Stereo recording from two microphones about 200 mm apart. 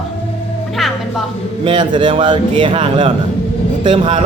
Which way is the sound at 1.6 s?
25° right (ahead or behind).